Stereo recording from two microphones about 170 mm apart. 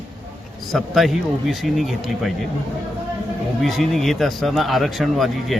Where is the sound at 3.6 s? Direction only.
Centre (ahead or behind).